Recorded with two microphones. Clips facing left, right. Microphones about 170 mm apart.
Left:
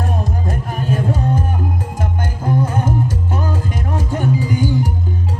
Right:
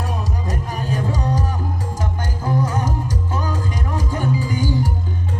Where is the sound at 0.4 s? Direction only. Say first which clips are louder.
Left 4 dB; 55° left (ahead or behind).